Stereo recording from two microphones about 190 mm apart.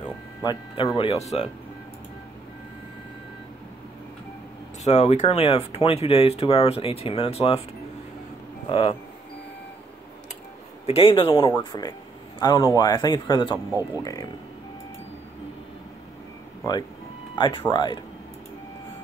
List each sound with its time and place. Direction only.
0.4 s a man's voice: 20° left (ahead or behind)
4.8 s speech: 35° left (ahead or behind)
8.6 s speech: 30° left (ahead or behind)
10.9 s a man's voice: 30° left (ahead or behind)
17.4 s a man's voice: 25° left (ahead or behind)